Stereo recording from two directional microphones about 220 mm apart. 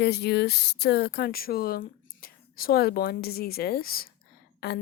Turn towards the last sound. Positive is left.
turn(degrees=50)  # may be behind; listen again after turning